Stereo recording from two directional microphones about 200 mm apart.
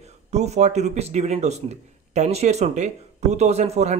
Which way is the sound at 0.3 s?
35° right (ahead or behind).